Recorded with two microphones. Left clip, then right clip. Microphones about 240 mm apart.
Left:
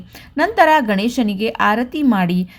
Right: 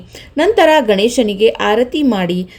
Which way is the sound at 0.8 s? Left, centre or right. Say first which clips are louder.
Right 7 dB; left.